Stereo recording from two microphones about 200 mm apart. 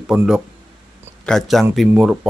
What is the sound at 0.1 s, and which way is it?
A man's voice, centre (ahead or behind).